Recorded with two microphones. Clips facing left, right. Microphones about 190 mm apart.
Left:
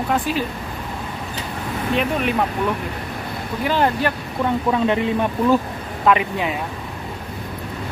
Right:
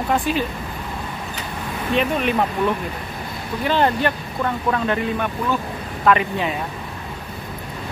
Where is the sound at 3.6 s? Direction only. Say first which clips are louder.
Even; 5° left (ahead or behind).